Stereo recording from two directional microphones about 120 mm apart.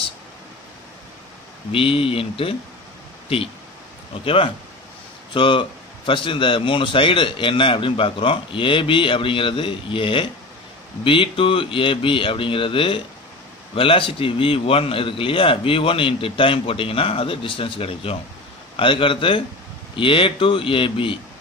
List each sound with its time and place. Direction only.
1.7 s a man's voice: 50° left (ahead or behind)
4.2 s a man's voice: 50° left (ahead or behind)